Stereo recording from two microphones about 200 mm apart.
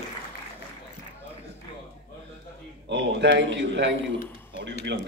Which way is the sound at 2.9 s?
60° right (ahead or behind).